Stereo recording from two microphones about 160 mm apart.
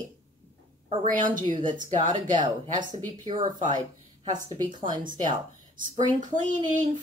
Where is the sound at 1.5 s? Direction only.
55° right (ahead or behind).